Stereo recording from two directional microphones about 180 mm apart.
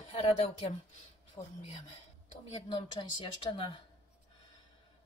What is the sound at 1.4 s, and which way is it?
Speech, 15° left (ahead or behind).